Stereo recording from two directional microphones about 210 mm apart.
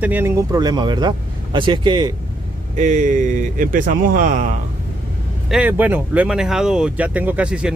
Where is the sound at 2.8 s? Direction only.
35° right (ahead or behind).